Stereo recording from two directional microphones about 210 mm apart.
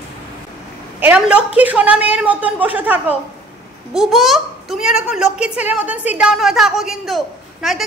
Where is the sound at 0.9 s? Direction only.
5° right (ahead or behind).